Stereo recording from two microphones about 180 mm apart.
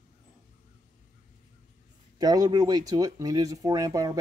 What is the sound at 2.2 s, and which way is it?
Speech, 20° right (ahead or behind).